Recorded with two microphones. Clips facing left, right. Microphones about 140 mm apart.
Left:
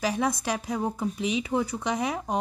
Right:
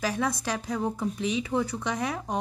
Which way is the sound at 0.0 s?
15° left (ahead or behind).